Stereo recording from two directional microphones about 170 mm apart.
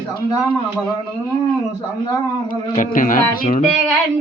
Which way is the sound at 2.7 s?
50° left (ahead or behind).